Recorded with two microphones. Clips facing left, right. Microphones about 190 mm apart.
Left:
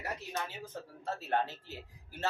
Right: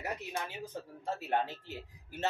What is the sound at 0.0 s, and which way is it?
Speech, 15° right (ahead or behind).